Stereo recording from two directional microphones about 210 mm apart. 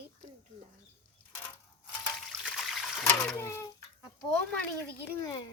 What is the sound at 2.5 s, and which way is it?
Water, centre (ahead or behind).